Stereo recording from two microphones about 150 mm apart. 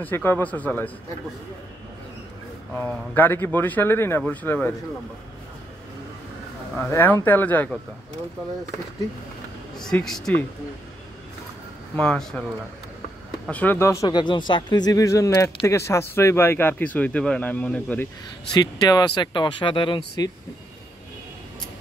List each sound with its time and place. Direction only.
0.0 s speech: 15° left (ahead or behind)
2.8 s speech: 15° left (ahead or behind)
6.9 s speech: 15° left (ahead or behind)
9.8 s speech: 5° left (ahead or behind)
12.0 s speech: 5° left (ahead or behind)
13.5 s a man's voice: 10° left (ahead or behind)
18.5 s a man's voice: 25° left (ahead or behind)